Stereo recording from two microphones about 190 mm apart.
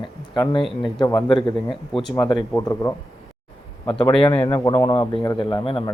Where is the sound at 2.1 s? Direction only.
20° left (ahead or behind).